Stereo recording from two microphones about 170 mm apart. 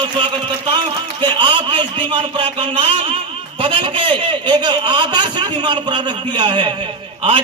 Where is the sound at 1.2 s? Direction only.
30° right (ahead or behind).